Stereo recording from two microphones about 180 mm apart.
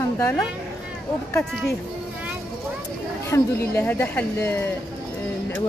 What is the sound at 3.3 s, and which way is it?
A woman's voice, 10° left (ahead or behind).